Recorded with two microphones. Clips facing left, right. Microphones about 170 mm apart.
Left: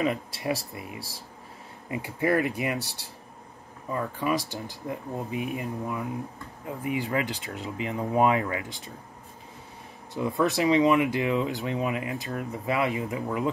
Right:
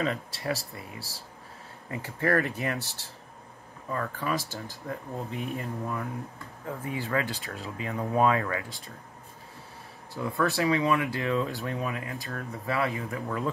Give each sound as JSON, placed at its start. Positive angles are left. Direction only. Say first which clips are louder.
{"t": 0.0, "sound": "speech", "louder": "left 3 dB", "side_deg": 15}
{"t": 1.9, "sound": "speech", "louder": "left 2 dB", "side_deg": 15}
{"t": 3.9, "sound": "speech", "louder": "left 3 dB", "side_deg": 15}
{"t": 10.1, "sound": "speech", "louder": "left 3 dB", "side_deg": 20}